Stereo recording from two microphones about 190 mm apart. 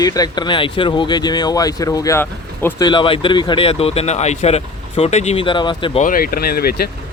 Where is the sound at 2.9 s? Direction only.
25° left (ahead or behind).